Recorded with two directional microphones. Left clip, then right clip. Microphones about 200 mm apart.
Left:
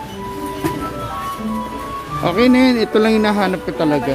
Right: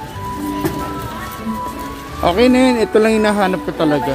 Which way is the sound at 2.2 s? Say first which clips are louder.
Right 2 dB; 10° left (ahead or behind).